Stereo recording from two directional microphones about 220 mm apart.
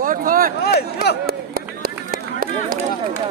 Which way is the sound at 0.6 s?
45° left (ahead or behind).